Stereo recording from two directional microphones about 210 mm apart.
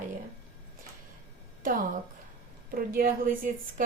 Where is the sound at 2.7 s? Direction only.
45° right (ahead or behind).